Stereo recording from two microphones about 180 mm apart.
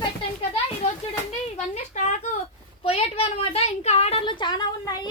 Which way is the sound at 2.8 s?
30° left (ahead or behind).